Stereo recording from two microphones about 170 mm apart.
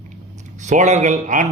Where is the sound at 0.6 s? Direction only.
45° right (ahead or behind).